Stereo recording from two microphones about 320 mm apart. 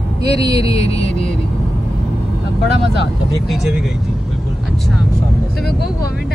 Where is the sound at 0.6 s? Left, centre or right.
Centre.